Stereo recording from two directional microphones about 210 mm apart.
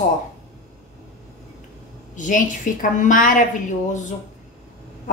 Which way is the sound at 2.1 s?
35° left (ahead or behind).